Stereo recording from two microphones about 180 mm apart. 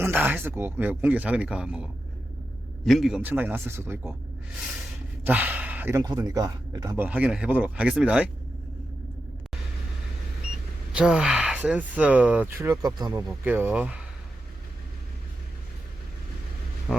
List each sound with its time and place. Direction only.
0.0 s speech: 10° right (ahead or behind)
5.2 s speech: 10° right (ahead or behind)
10.9 s speech: 5° right (ahead or behind)
13.2 s speech: 10° right (ahead or behind)